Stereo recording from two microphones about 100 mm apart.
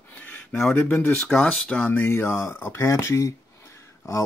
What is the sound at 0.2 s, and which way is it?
Speech, 15° left (ahead or behind).